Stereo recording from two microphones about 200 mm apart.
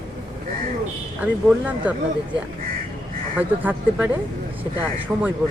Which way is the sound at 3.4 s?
10° right (ahead or behind).